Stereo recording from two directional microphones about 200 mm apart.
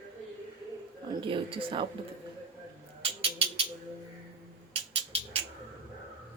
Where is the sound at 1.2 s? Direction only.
25° right (ahead or behind).